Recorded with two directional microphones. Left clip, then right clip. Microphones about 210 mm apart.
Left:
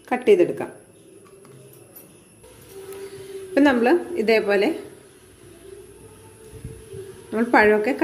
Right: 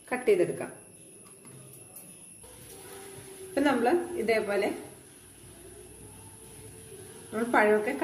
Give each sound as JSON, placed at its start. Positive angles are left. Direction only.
{"t": 0.1, "sound": "a woman's voice", "side_deg": 35}
{"t": 3.5, "sound": "a woman's voice", "side_deg": 40}
{"t": 7.3, "sound": "a woman's voice", "side_deg": 40}